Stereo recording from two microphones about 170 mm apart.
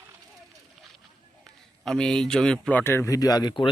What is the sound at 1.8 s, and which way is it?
A man's voice, 5° left (ahead or behind).